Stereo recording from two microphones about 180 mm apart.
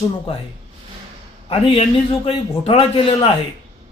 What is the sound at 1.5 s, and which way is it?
A man's voice, 30° left (ahead or behind).